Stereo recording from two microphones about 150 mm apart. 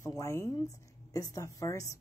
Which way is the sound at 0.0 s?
20° left (ahead or behind).